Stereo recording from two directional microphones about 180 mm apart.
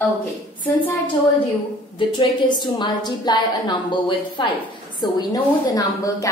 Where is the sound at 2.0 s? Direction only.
25° left (ahead or behind).